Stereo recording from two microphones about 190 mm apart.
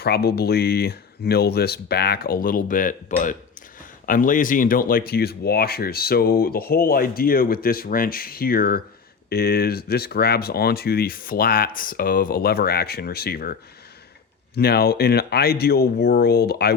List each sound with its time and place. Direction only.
0.0 s speech: 55° left (ahead or behind)